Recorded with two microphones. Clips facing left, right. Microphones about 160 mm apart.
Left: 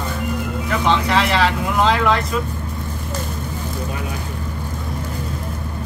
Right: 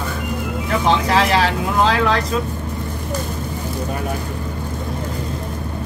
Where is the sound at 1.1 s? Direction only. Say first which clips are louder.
Right 2 dB; 40° right (ahead or behind).